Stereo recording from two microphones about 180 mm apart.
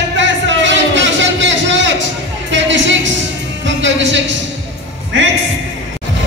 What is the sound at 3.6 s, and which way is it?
Music, 90° right.